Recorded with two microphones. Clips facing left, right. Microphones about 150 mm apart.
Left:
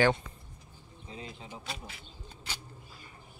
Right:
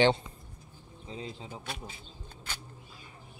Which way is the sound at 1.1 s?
30° right (ahead or behind).